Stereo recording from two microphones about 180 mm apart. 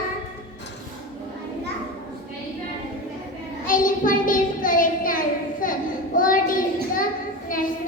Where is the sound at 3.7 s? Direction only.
50° left (ahead or behind).